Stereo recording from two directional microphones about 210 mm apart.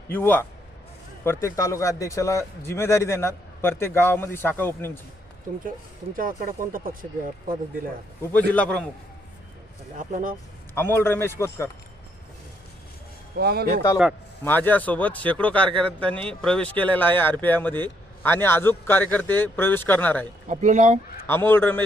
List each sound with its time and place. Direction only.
0.1 s a man's voice: 10° left (ahead or behind)
6.7 s speech: 40° right (ahead or behind)
8.2 s a man's voice: 10° left (ahead or behind)
10.1 s speech: 35° right (ahead or behind)
10.8 s a man's voice: 10° left (ahead or behind)
13.3 s speech: 50° right (ahead or behind)
14.4 s a man's voice: 10° left (ahead or behind)
20.5 s speech: 35° right (ahead or behind)
21.2 s a man's voice: 10° left (ahead or behind)